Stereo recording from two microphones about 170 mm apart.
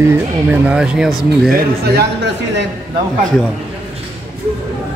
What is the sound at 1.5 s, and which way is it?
Speech, 70° right (ahead or behind).